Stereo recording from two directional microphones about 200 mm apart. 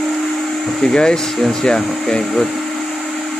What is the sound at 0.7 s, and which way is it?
Speech, 5° left (ahead or behind).